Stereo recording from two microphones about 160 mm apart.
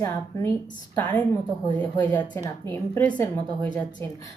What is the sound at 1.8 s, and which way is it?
A woman's voice, 10° left (ahead or behind).